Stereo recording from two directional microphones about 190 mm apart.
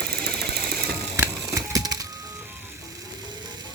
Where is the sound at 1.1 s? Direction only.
15° right (ahead or behind).